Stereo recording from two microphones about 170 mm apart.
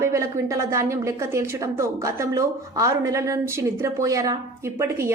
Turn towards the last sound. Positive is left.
turn(degrees=-15)  # may be behind; listen again after turning